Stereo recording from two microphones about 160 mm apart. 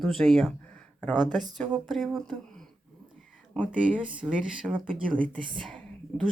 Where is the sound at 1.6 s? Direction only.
Centre (ahead or behind).